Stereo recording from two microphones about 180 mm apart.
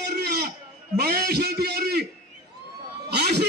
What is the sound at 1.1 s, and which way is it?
Speech, 60° right (ahead or behind).